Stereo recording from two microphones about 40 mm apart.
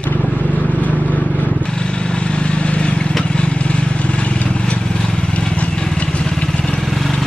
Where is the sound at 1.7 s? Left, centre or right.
Left.